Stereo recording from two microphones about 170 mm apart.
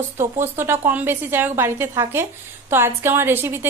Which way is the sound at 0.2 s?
15° right (ahead or behind).